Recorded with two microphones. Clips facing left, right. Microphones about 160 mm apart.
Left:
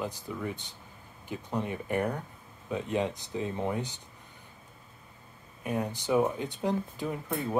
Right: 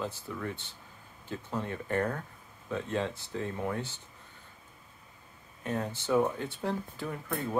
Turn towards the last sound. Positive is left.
turn(degrees=15)  # may be behind; listen again after turning